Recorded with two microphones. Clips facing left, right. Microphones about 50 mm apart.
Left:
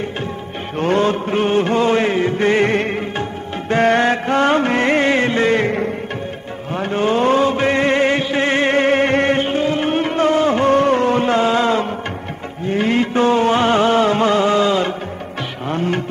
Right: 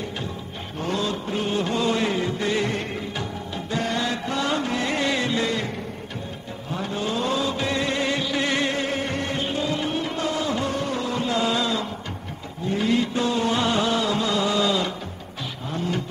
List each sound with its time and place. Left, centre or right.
0.7 s chant: left
3.7 s music: left
6.7 s chant: left
12.6 s music: left
15.7 s vehicle: left